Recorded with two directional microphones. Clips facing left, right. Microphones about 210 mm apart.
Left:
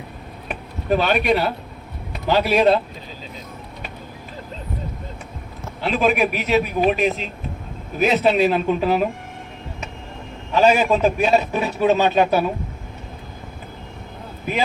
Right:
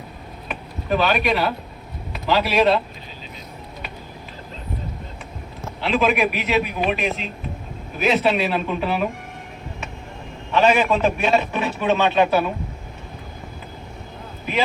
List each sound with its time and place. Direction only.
1.1 s a man's voice: 35° left (ahead or behind)
5.8 s a man's voice: 40° left (ahead or behind)
10.5 s a man's voice: 40° left (ahead or behind)